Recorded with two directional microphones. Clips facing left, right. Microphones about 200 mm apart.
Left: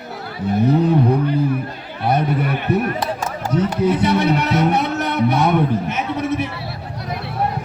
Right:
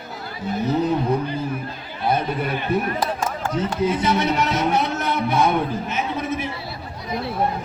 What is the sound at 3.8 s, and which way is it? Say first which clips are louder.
Speech: left 3 dB; 65° left (ahead or behind).